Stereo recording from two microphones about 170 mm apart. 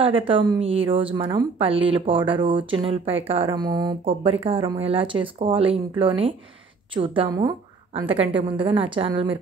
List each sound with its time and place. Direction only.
0.3 s speech: 30° right (ahead or behind)